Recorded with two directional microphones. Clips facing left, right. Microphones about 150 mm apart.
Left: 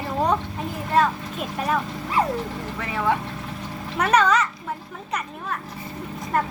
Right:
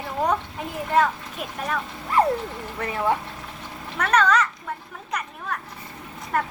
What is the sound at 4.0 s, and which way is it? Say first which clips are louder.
Speech: left 1 dB; 10° left (ahead or behind).